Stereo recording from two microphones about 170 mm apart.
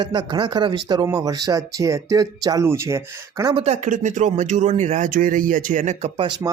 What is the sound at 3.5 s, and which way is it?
Speech, 40° right (ahead or behind).